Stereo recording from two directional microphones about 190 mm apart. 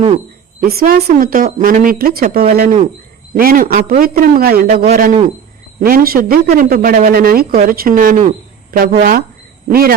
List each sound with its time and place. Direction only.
0.7 s a woman's voice: 55° right (ahead or behind)